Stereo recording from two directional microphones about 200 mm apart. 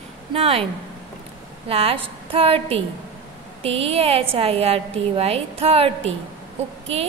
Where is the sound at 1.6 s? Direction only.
30° right (ahead or behind).